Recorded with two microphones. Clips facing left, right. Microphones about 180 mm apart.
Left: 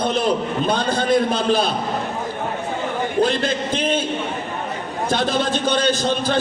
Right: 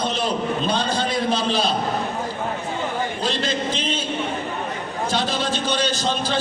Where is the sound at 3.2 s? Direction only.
55° left (ahead or behind).